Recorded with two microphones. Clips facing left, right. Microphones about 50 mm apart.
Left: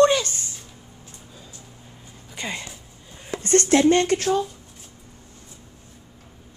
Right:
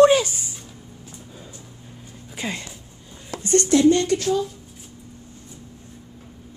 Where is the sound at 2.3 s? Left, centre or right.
Centre.